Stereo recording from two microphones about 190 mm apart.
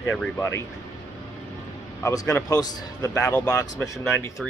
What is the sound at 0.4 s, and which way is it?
Speech, 15° left (ahead or behind).